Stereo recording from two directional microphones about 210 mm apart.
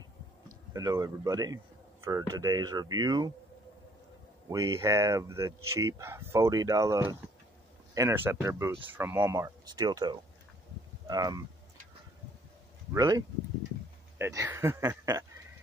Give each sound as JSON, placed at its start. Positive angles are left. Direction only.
{"t": 0.7, "sound": "speech", "side_deg": -15}
{"t": 4.5, "sound": "speech", "side_deg": -15}
{"t": 12.9, "sound": "speech", "side_deg": -20}